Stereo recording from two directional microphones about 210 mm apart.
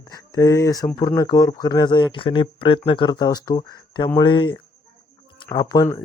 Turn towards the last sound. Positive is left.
turn(degrees=15)  # may be behind; listen again after turning